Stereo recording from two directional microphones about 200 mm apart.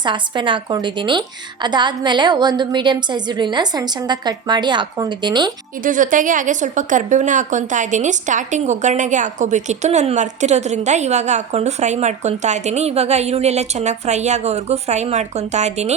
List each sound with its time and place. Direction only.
0.0 s a woman's voice: 25° right (ahead or behind)
5.8 s a woman's voice: 40° right (ahead or behind)